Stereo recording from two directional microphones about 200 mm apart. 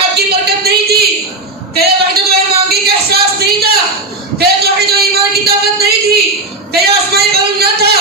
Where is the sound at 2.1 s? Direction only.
50° right (ahead or behind).